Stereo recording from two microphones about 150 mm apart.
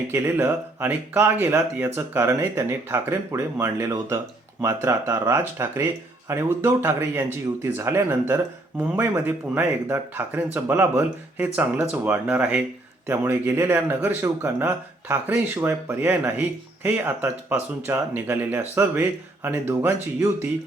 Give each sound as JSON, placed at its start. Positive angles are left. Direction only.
{"t": 0.1, "sound": "speech", "side_deg": -15}